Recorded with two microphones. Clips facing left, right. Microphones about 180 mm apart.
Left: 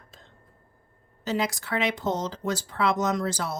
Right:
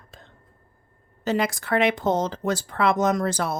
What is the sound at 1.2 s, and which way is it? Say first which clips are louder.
Speech: right 4 dB; 55° right (ahead or behind).